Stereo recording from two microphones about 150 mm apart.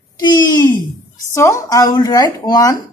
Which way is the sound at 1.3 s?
20° left (ahead or behind).